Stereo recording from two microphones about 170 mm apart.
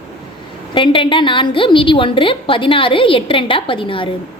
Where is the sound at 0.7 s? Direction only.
30° left (ahead or behind).